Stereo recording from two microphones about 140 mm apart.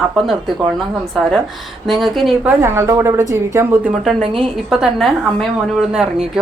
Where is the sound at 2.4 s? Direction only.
20° right (ahead or behind).